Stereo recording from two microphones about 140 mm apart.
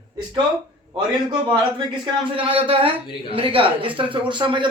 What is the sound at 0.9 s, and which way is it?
Speech, 35° right (ahead or behind).